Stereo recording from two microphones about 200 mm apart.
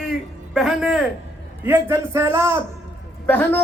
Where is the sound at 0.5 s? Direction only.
Centre (ahead or behind).